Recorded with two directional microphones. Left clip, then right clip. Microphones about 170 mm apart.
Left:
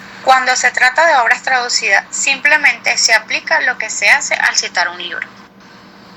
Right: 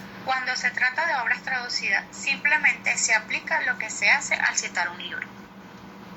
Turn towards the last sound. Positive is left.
turn(degrees=30)  # may be behind; listen again after turning